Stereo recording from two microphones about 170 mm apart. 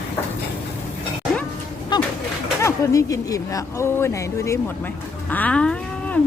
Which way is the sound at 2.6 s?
20° left (ahead or behind).